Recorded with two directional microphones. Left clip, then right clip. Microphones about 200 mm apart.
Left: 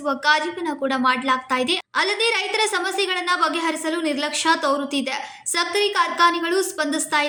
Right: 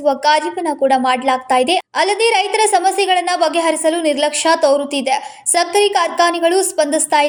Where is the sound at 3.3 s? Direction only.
10° right (ahead or behind).